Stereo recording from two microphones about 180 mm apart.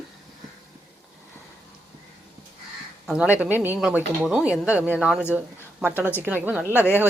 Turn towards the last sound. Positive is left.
turn(degrees=10)  # may be behind; listen again after turning